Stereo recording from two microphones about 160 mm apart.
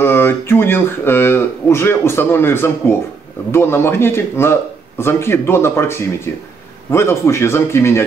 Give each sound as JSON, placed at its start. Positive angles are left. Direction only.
{"t": 0.0, "sound": "a man's voice", "side_deg": 15}